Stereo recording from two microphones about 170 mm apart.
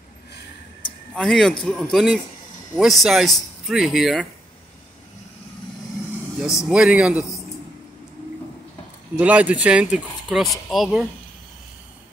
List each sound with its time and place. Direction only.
1.1 s a man's voice: 5° left (ahead or behind)
6.7 s a man's voice: 5° right (ahead or behind)
9.1 s speech: 10° right (ahead or behind)